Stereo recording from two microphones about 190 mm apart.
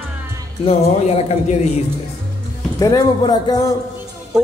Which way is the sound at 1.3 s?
35° left (ahead or behind).